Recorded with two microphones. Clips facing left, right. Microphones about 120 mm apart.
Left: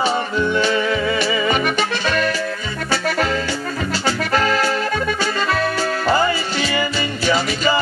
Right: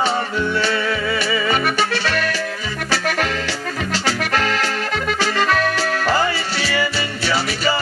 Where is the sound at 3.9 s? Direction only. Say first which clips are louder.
Left 1 dB; 20° left (ahead or behind).